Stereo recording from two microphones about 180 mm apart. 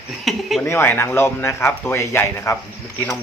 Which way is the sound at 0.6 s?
10° left (ahead or behind).